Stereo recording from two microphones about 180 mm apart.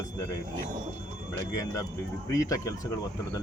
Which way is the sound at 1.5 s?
20° left (ahead or behind).